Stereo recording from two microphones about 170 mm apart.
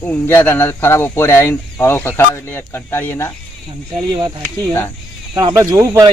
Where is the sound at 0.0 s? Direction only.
10° left (ahead or behind).